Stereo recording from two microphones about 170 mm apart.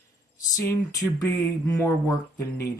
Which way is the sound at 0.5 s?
20° left (ahead or behind).